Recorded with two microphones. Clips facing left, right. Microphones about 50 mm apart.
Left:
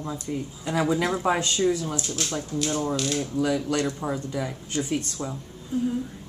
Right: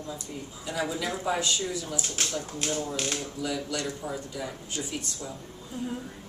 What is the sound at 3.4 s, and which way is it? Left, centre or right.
Speech, left.